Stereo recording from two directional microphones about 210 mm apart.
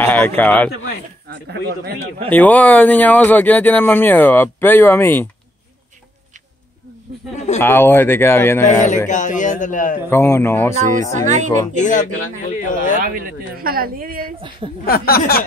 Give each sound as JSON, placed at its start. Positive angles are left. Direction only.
{"t": 0.0, "sound": "a sound", "side_deg": 10}
{"t": 0.4, "sound": "speech", "side_deg": 10}
{"t": 1.3, "sound": "speech", "side_deg": -50}
{"t": 2.2, "sound": "speech", "side_deg": 5}
{"t": 7.6, "sound": "speech", "side_deg": 10}
{"t": 8.6, "sound": "a man's voice", "side_deg": 35}
{"t": 10.0, "sound": "speech", "side_deg": 10}
{"t": 11.0, "sound": "speech", "side_deg": -35}
{"t": 11.8, "sound": "a man's voice", "side_deg": 35}
{"t": 13.0, "sound": "speech", "side_deg": -45}
{"t": 14.9, "sound": "speech", "side_deg": 45}